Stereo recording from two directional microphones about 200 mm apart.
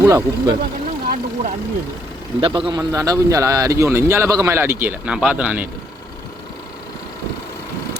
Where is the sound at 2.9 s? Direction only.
15° right (ahead or behind).